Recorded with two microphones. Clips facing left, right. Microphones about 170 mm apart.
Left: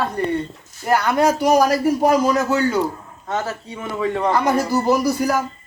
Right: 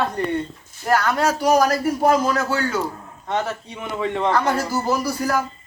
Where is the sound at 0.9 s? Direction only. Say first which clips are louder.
Left 2 dB; 15° left (ahead or behind).